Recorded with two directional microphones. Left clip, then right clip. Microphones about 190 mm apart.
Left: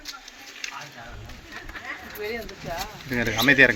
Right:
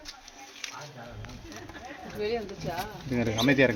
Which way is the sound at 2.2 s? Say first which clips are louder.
Right 2 dB; 55° right (ahead or behind).